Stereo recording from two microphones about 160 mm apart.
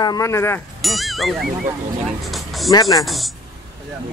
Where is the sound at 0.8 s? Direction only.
Centre (ahead or behind).